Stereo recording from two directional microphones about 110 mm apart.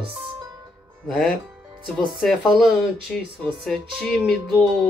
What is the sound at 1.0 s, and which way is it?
Speech, centre (ahead or behind).